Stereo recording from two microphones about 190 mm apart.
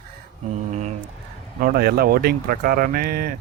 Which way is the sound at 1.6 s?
55° right (ahead or behind).